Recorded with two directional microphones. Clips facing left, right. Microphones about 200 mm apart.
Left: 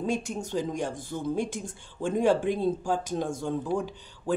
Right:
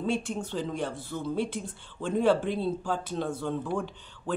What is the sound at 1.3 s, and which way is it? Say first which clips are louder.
Speech: even; 45° left (ahead or behind).